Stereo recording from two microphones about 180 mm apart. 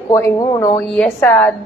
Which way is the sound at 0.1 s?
20° left (ahead or behind).